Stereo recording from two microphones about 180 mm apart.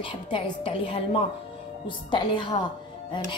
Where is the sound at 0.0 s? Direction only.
30° left (ahead or behind).